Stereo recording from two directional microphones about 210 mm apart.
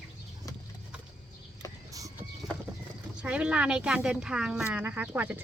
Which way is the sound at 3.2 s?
5° right (ahead or behind).